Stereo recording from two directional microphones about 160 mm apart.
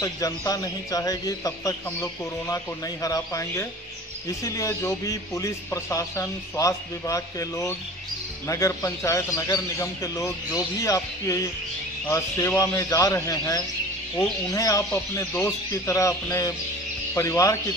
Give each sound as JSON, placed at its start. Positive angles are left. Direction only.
{"t": 0.0, "sound": "a man's voice", "side_deg": 20}